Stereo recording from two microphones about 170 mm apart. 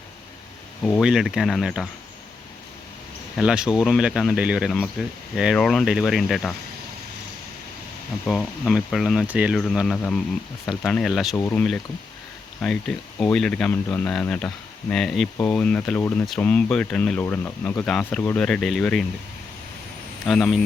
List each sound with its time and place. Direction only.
1.0 s speech: 5° right (ahead or behind)
3.3 s speech: 5° right (ahead or behind)
8.3 s speech: centre (ahead or behind)
11.3 s speech: 10° left (ahead or behind)
20.2 s speech: centre (ahead or behind)